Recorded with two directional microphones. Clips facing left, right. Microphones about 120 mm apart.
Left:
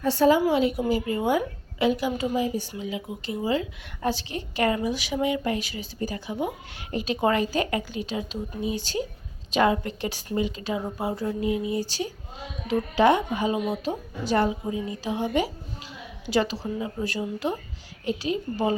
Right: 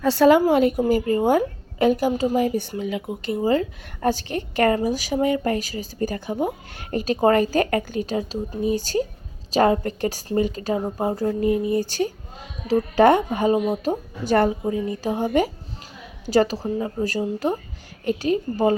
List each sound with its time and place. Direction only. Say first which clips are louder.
0.0 s a woman's voice: right 5 dB; 80° right
0.4 s speech: right 5 dB; 50° right (ahead or behind)
2.3 s speech: right 5 dB; 60° right (ahead or behind)